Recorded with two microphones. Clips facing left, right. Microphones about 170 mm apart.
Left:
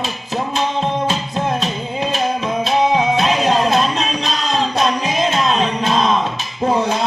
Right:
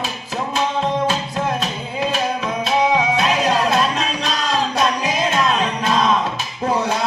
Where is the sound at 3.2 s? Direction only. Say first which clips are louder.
Left 2 dB; 25° left (ahead or behind).